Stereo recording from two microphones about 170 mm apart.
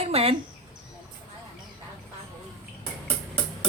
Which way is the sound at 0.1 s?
35° right (ahead or behind).